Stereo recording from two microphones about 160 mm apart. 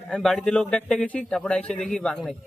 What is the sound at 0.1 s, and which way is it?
Speech, centre (ahead or behind).